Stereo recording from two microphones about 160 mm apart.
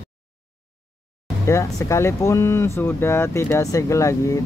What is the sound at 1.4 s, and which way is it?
Speech, 20° left (ahead or behind).